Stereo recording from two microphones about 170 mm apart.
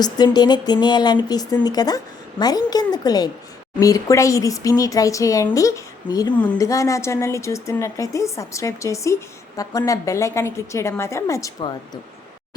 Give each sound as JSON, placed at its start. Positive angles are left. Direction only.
{"t": 0.0, "sound": "a woman's voice", "side_deg": 25}